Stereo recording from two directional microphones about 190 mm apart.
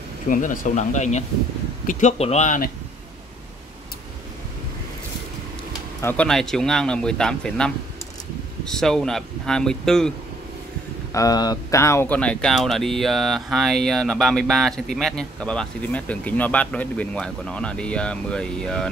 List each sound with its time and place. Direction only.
0.3 s speech: 45° left (ahead or behind)
5.9 s speech: 10° left (ahead or behind)
11.1 s speech: 15° left (ahead or behind)